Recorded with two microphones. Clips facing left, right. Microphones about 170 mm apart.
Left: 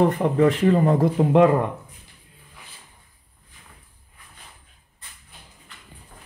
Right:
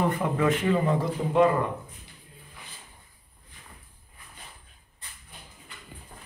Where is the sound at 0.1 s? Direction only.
35° left (ahead or behind).